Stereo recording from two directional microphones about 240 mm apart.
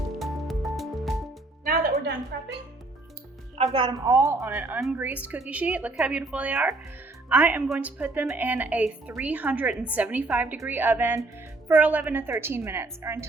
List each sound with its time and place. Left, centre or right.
0.2 s music: centre
1.6 s music: right
3.6 s a woman's voice: right